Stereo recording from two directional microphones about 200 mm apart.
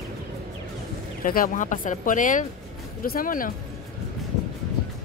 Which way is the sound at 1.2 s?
45° left (ahead or behind).